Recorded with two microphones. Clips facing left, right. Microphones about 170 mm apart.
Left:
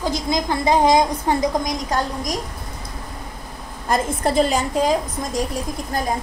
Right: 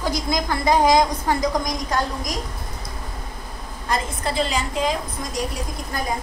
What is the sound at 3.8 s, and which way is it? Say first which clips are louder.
A woman's voice: left 5 dB; 45° left (ahead or behind).